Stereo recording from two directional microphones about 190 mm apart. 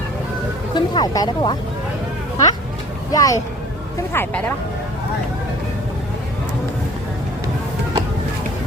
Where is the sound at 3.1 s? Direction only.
20° left (ahead or behind).